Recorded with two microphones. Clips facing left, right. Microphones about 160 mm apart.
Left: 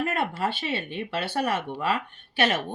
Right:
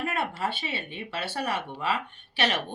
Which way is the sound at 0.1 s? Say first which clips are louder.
Left 3 dB; 50° left (ahead or behind).